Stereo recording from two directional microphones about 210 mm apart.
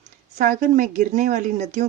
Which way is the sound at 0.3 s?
40° right (ahead or behind).